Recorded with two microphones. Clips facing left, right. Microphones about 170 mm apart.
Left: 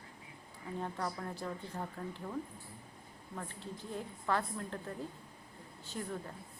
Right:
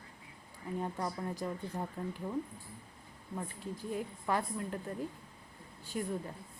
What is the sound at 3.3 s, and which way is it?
A woman's voice, 15° right (ahead or behind).